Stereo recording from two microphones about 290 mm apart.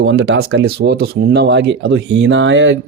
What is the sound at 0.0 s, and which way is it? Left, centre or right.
Speech, right.